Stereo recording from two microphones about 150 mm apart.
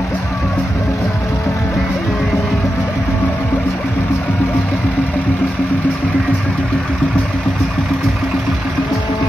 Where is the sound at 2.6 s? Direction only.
20° left (ahead or behind).